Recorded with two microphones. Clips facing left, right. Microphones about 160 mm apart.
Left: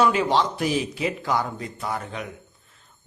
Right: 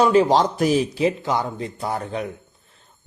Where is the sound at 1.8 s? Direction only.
35° right (ahead or behind).